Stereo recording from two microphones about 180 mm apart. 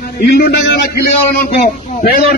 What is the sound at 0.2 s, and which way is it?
A man's voice, 60° left (ahead or behind).